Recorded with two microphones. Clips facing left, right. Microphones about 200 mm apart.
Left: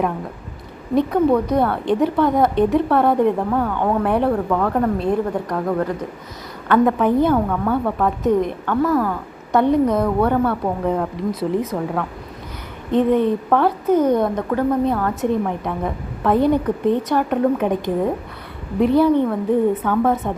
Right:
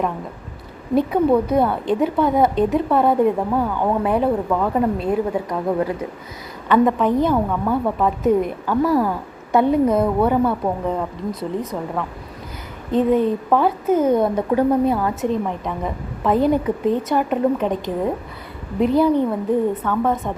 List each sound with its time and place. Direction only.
0.9 s a woman's voice: 5° right (ahead or behind)
6.8 s a woman's voice: 5° left (ahead or behind)
8.9 s speech: 25° right (ahead or behind)
9.5 s a woman's voice: 5° right (ahead or behind)
19.8 s a woman's voice: 5° left (ahead or behind)